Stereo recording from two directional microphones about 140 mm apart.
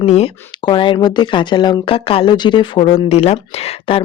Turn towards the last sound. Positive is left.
turn(degrees=45)  # may be behind; listen again after turning